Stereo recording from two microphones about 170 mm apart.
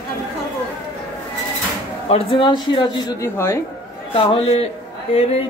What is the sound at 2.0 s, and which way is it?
Speech, 35° left (ahead or behind).